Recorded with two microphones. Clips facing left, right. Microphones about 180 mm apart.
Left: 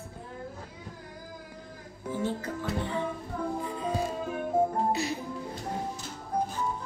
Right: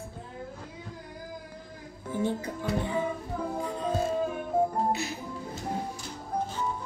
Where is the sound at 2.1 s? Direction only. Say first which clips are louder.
Right 2 dB; 15° right (ahead or behind).